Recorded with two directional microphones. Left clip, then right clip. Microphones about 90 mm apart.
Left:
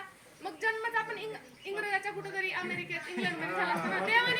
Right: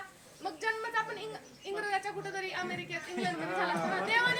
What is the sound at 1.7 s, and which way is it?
A woman's voice, 15° right (ahead or behind).